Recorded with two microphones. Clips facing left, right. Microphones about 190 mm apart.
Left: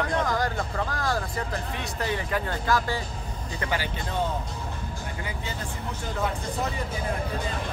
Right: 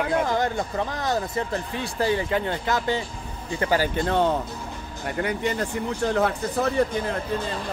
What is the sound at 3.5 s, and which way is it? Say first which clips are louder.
Speech: right 8 dB; 35° right (ahead or behind).